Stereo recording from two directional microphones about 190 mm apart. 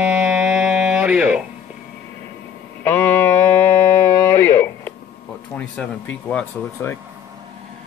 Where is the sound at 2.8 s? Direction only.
10° left (ahead or behind).